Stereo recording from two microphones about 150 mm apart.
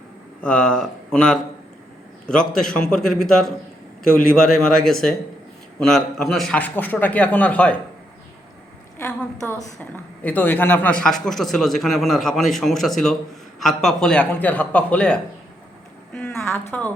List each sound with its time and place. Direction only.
0.4 s a man's voice: 5° left (ahead or behind)
4.6 s a man's voice: 5° left (ahead or behind)
9.0 s a woman's voice: 15° left (ahead or behind)
16.3 s a woman's voice: 15° left (ahead or behind)